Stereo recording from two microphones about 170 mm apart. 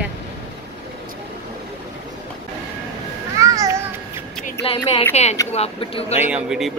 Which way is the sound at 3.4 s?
20° right (ahead or behind).